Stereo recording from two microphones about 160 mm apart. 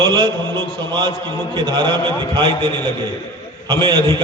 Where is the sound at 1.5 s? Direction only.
25° right (ahead or behind).